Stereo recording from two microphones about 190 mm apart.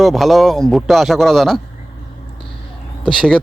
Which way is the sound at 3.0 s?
5° left (ahead or behind).